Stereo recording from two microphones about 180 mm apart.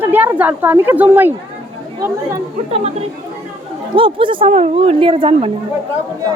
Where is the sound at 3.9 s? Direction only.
30° right (ahead or behind).